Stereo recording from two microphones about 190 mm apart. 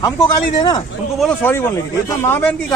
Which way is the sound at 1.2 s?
5° left (ahead or behind).